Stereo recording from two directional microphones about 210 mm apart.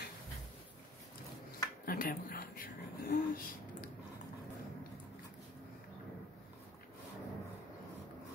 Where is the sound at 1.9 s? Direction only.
40° left (ahead or behind).